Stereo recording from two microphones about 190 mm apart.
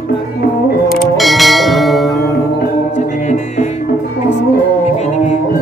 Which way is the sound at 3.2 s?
40° left (ahead or behind).